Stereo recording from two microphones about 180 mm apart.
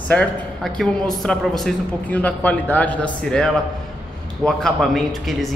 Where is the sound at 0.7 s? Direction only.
5° left (ahead or behind).